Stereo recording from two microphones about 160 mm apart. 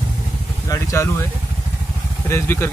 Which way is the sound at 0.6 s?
20° left (ahead or behind).